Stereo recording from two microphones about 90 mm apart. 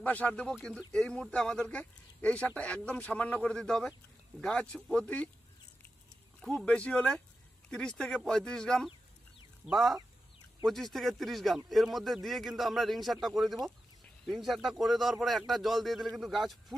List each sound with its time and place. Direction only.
0.0 s speech: 15° left (ahead or behind)
6.4 s speech: 10° left (ahead or behind)